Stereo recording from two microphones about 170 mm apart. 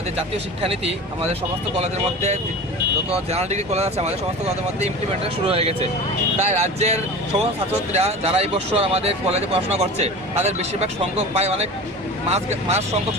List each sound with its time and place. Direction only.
1.8 s speech: 40° right (ahead or behind)